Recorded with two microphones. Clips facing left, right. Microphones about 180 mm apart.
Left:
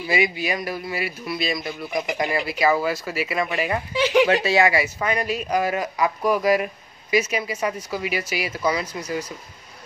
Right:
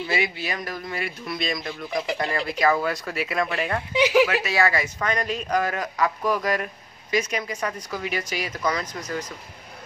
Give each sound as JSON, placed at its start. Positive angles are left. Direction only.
{"t": 0.0, "sound": "speech", "side_deg": 15}
{"t": 4.3, "sound": "speech", "side_deg": 30}
{"t": 4.6, "sound": "speech", "side_deg": 10}